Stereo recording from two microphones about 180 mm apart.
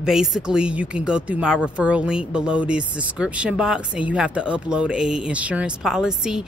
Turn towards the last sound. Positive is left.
turn(degrees=-5)  # may be behind; listen again after turning